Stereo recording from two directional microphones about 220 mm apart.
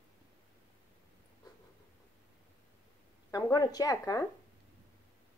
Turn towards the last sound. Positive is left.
turn(degrees=15)  # may be behind; listen again after turning